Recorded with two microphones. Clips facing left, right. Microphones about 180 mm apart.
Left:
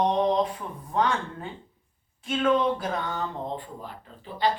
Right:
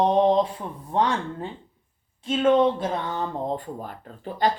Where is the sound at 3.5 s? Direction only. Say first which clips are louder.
Right 5 dB; 45° right (ahead or behind).